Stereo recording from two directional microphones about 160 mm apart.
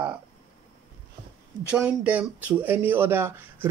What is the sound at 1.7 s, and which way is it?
Speech, 10° right (ahead or behind).